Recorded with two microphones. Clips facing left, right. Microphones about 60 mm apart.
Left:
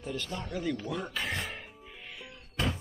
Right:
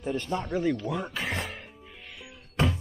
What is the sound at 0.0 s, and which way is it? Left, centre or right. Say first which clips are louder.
Speech: right 7 dB; right.